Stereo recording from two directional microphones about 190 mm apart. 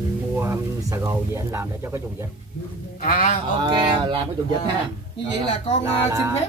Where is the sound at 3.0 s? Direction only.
45° left (ahead or behind).